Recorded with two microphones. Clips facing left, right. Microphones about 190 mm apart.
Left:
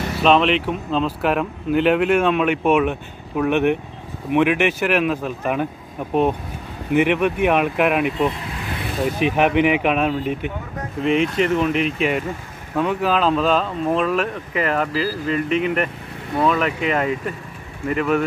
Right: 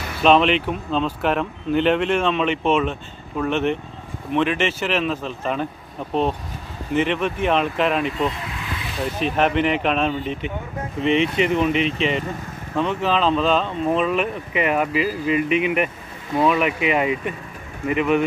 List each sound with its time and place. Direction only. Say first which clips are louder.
0.2 s speech: even; centre (ahead or behind)
6.9 s speech: left 4 dB; 10° left (ahead or behind); by 18.2 s 5° right (ahead or behind)